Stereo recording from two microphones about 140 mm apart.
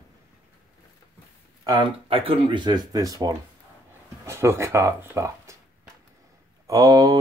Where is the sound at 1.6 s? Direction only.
30° right (ahead or behind).